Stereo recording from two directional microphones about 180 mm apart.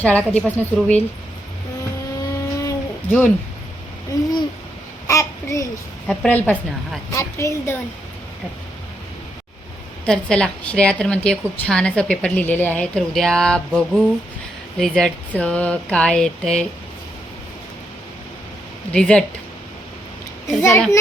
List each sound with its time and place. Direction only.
0.0 s a woman's voice: 10° left (ahead or behind)
2.3 s a sound: 15° left (ahead or behind)
5.0 s a sound: 15° left (ahead or behind)
6.1 s a woman's voice: 5° left (ahead or behind)
10.1 s a woman's voice: 5° left (ahead or behind)
18.9 s a woman's voice: 5° left (ahead or behind)
20.6 s a woman's voice: 15° left (ahead or behind)